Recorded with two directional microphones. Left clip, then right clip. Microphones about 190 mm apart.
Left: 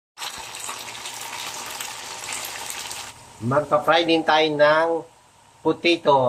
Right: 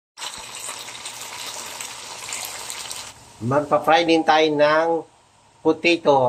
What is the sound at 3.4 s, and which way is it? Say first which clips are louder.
Speech: right 1 dB; 20° right (ahead or behind).